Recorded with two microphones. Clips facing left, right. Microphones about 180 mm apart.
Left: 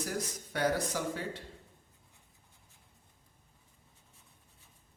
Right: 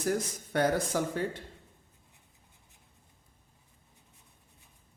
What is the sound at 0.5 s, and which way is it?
Speech, 50° right (ahead or behind).